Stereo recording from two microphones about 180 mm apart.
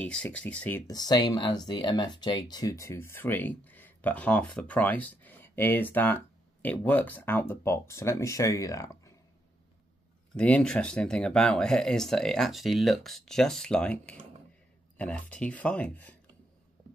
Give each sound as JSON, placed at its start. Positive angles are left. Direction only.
{"t": 0.0, "sound": "speech", "side_deg": 5}
{"t": 10.3, "sound": "speech", "side_deg": 5}